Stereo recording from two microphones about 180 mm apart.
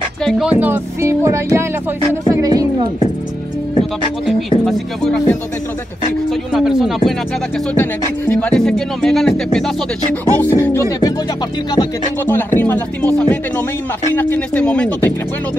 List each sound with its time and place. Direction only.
0.2 s a woman's voice: centre (ahead or behind); by 3.1 s 20° right (ahead or behind)
4.6 s speech: centre (ahead or behind)
6.5 s speech: 5° right (ahead or behind)
7.7 s speech: 10° left (ahead or behind)
10.3 s speech: 10° left (ahead or behind)
12.5 s speech: 10° left (ahead or behind)
14.1 s speech: 10° left (ahead or behind)